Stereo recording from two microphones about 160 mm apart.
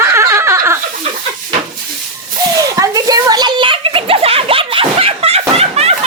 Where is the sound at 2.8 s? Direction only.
20° right (ahead or behind).